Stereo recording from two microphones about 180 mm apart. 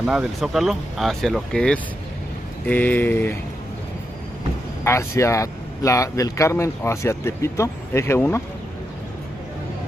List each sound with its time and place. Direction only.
0.0 s speech: 5° right (ahead or behind); by 3.3 s 10° left (ahead or behind)
4.8 s speech: 15° left (ahead or behind)